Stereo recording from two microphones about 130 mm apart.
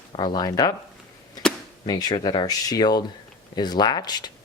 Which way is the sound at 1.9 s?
30° left (ahead or behind).